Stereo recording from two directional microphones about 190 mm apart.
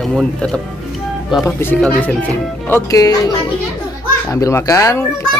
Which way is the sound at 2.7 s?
20° left (ahead or behind).